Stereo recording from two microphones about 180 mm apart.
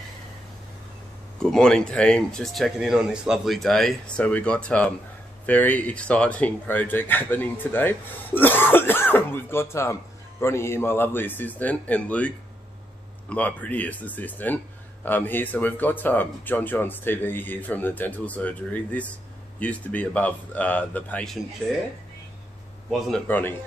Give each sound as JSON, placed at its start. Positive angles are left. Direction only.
{"t": 1.4, "sound": "speech", "side_deg": 5}
{"t": 22.8, "sound": "speech", "side_deg": 0}